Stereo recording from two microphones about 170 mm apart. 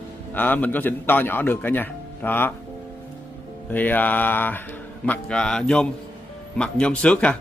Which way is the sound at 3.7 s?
10° left (ahead or behind).